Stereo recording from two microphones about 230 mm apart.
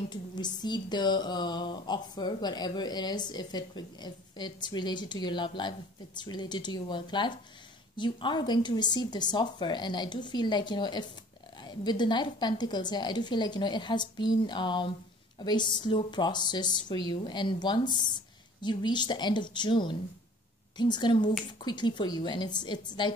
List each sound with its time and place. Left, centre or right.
0.1 s a woman's voice: centre